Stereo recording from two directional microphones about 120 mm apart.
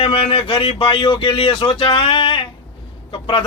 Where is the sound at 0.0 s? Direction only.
50° left (ahead or behind).